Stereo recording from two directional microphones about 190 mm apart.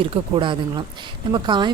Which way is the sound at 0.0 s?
25° right (ahead or behind).